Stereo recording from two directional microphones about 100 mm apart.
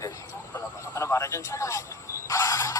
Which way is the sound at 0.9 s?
20° left (ahead or behind).